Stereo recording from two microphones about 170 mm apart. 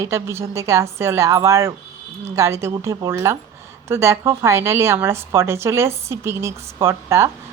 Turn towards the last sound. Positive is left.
turn(degrees=-15)  # may be behind; listen again after turning